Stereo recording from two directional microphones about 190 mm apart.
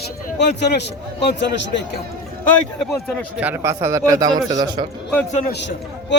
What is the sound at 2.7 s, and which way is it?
A man's voice, centre (ahead or behind).